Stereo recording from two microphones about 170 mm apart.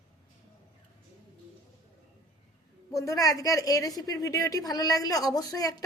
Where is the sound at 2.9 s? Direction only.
20° left (ahead or behind).